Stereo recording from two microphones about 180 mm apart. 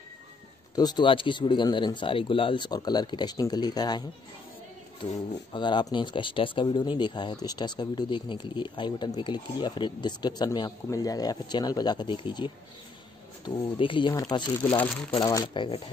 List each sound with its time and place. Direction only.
0.7 s speech: 25° left (ahead or behind)
5.5 s speech: 25° left (ahead or behind)
14.8 s speech: 5° left (ahead or behind)
15.2 s speech: 20° left (ahead or behind)